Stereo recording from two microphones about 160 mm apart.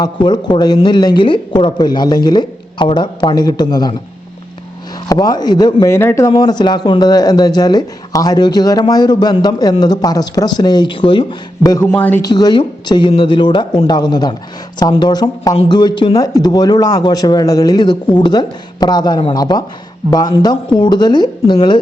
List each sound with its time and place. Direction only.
0.0 s a man's voice: 25° left (ahead or behind)
5.0 s a man's voice: 25° left (ahead or behind)
12.2 s a man's voice: 25° left (ahead or behind)